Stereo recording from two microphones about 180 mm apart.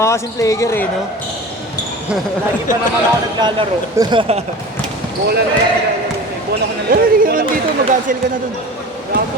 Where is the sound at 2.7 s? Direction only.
45° left (ahead or behind).